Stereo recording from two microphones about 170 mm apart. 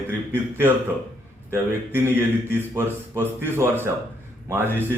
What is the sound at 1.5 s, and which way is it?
A man's voice, 15° right (ahead or behind).